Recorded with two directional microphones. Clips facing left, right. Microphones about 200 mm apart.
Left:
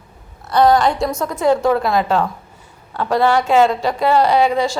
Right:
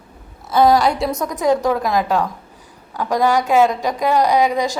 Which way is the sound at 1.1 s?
15° right (ahead or behind).